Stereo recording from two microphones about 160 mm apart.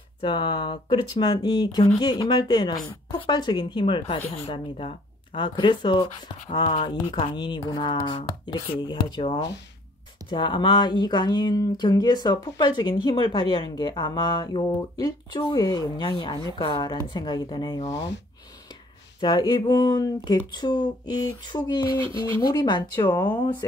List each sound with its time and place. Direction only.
0.2 s speech: 30° left (ahead or behind)
19.1 s speech: 30° left (ahead or behind)